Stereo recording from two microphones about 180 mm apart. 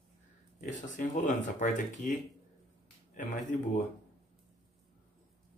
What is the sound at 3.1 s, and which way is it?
Speech, 45° left (ahead or behind).